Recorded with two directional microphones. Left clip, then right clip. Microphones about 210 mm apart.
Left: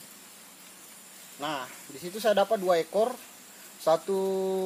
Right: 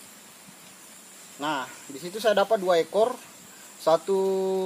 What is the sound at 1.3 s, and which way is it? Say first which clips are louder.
Speech: right 4 dB; 15° right (ahead or behind).